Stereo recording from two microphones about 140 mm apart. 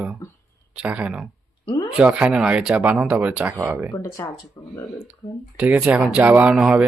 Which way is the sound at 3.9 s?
20° left (ahead or behind).